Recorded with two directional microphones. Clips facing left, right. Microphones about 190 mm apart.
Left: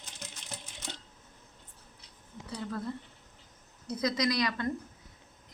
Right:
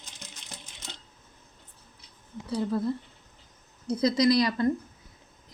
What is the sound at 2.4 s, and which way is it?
Speech, 30° right (ahead or behind).